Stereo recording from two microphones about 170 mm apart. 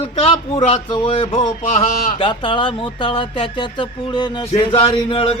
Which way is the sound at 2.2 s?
30° left (ahead or behind).